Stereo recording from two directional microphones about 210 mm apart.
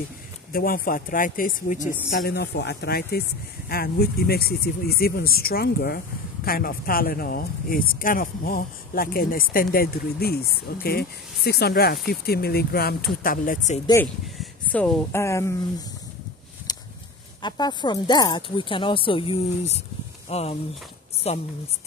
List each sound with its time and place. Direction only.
0.5 s speech: 45° left (ahead or behind)
14.4 s speech: 5° left (ahead or behind)
17.4 s speech: 20° left (ahead or behind)